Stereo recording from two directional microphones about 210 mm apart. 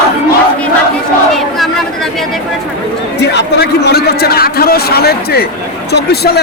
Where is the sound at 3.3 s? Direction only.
55° left (ahead or behind).